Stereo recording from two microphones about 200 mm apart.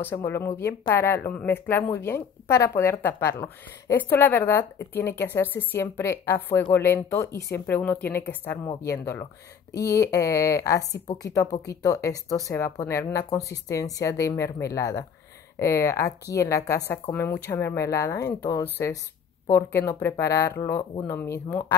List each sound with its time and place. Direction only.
0.0 s speech: 10° left (ahead or behind)